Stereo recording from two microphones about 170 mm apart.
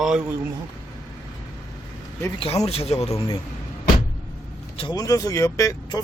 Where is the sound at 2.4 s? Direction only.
35° left (ahead or behind).